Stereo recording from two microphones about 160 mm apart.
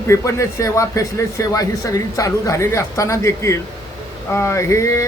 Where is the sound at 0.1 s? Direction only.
20° left (ahead or behind).